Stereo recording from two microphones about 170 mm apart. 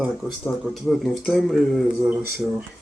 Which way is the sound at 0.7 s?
Centre (ahead or behind).